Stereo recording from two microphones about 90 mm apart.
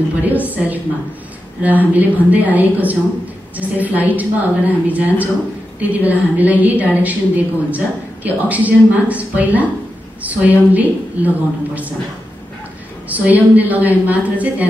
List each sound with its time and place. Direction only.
0.2 s a woman's voice: 20° right (ahead or behind)
13.1 s a woman's voice: 20° right (ahead or behind)